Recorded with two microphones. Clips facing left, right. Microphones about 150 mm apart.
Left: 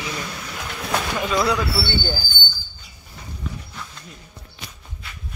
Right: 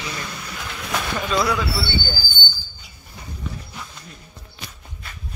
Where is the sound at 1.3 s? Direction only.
20° left (ahead or behind).